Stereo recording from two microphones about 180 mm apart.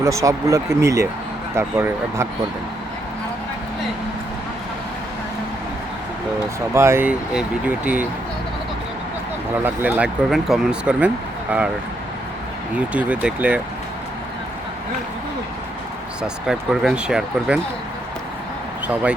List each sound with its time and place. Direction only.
0.0 s speech: 20° right (ahead or behind)
6.7 s speech: 15° right (ahead or behind)
9.6 s speech: 10° right (ahead or behind)
12.7 s speech: 10° right (ahead or behind)
16.2 s speech: 5° right (ahead or behind)